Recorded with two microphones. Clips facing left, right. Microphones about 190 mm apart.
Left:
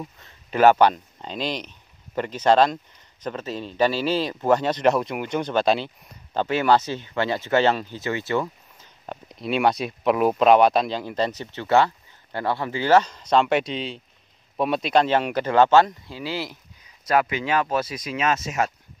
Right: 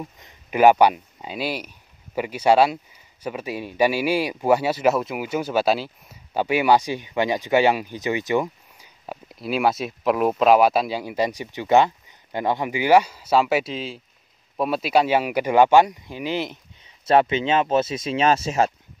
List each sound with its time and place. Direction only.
0.0 s speech: 15° right (ahead or behind); by 18.7 s 30° right (ahead or behind)